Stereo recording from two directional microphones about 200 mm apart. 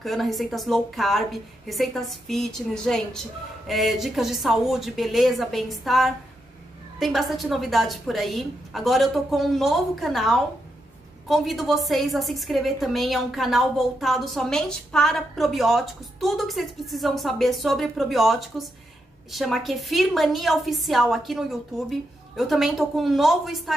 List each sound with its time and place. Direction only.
0.0 s a woman's voice: centre (ahead or behind)